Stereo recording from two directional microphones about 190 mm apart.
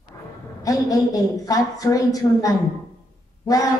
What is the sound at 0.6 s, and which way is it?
A woman's voice, 20° left (ahead or behind).